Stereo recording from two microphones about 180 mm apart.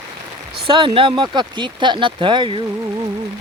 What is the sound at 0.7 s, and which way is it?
Speech, 30° right (ahead or behind).